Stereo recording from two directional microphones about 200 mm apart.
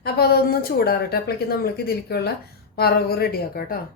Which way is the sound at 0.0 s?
50° left (ahead or behind).